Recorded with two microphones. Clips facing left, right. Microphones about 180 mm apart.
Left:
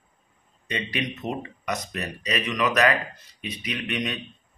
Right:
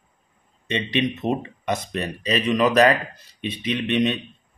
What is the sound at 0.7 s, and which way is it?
Speech, 25° right (ahead or behind).